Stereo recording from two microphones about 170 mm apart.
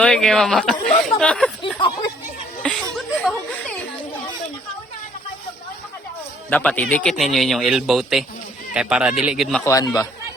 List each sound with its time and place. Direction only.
0.0 s a man's voice: 5° left (ahead or behind)
2.6 s chuckle: 5° left (ahead or behind)
6.5 s a man's voice: 10° left (ahead or behind)
9.6 s speech: 20° left (ahead or behind)